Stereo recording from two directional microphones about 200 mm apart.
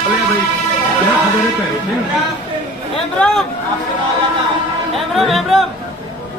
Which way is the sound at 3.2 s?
5° left (ahead or behind).